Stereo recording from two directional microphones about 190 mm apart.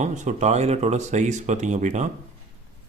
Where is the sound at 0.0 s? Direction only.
40° right (ahead or behind).